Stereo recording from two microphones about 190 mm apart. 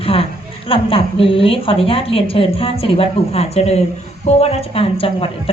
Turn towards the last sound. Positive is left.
turn(degrees=30)  # may be behind; listen again after turning